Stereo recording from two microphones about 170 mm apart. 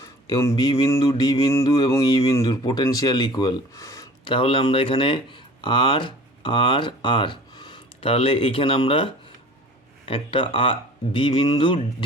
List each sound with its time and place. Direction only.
0.0 s speech: 20° left (ahead or behind)